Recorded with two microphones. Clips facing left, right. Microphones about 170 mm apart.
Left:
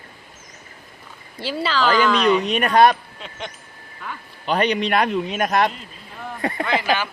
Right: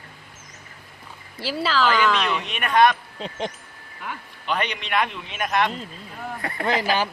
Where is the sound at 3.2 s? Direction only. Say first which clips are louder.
Right 5 dB; 35° right (ahead or behind).